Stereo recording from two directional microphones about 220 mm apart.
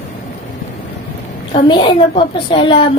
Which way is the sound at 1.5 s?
20° left (ahead or behind).